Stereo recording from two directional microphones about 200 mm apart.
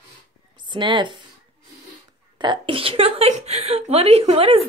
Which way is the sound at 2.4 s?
25° right (ahead or behind).